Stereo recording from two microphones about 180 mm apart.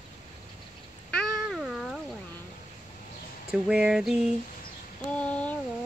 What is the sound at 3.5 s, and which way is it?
Female singing, 5° right (ahead or behind).